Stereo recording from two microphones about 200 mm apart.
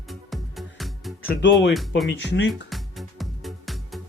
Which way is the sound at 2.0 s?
65° left (ahead or behind).